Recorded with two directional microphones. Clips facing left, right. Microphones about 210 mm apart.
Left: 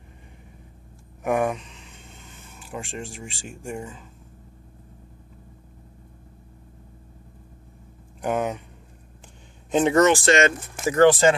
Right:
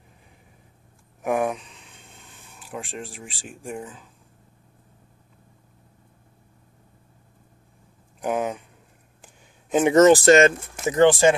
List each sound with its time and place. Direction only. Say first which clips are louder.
1.2 s speech: left 1 dB; centre (ahead or behind)
8.2 s speech: even; centre (ahead or behind)
9.2 s a sound: left 3 dB; 5° right (ahead or behind)
10.0 s speech: right 5 dB; 40° right (ahead or behind)
10.9 s speech: even; 15° right (ahead or behind)